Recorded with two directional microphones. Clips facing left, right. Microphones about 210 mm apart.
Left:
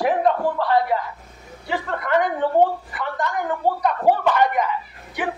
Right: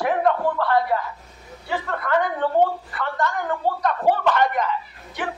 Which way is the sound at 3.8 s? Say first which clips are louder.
Left 1 dB; 10° left (ahead or behind).